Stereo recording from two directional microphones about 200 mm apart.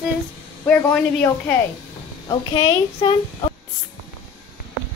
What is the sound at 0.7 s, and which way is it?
Speech, 5° left (ahead or behind).